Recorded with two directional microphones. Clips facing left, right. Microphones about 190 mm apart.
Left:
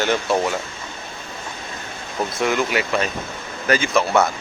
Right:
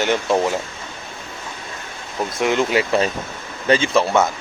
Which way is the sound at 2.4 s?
25° right (ahead or behind).